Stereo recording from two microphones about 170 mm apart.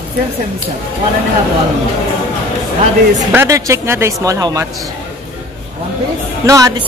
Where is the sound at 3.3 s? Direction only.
15° right (ahead or behind).